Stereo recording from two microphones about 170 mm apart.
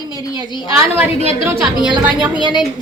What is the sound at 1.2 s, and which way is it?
Speech, 35° left (ahead or behind).